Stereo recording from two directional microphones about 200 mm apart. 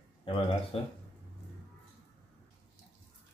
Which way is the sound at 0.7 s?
30° left (ahead or behind).